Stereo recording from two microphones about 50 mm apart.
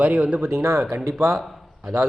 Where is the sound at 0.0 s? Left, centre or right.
Right.